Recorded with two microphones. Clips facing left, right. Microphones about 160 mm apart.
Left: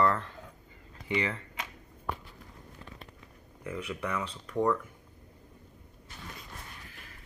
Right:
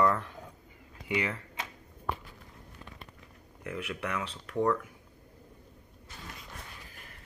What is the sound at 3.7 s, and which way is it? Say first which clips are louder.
Speech: left 1 dB; 10° right (ahead or behind).